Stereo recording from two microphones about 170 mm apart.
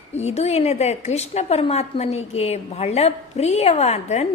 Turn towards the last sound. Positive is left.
turn(degrees=40)  # may be behind; listen again after turning